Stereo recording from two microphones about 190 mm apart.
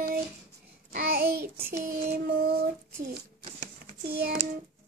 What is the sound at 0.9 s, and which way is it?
Child singing, 55° right (ahead or behind).